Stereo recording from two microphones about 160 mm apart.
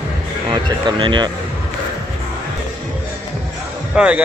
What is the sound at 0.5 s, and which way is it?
Speech, 30° right (ahead or behind).